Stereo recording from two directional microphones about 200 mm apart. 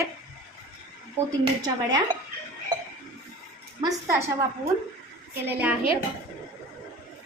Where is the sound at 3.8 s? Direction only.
15° right (ahead or behind).